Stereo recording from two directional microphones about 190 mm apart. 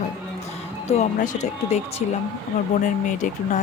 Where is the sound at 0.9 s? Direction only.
40° left (ahead or behind).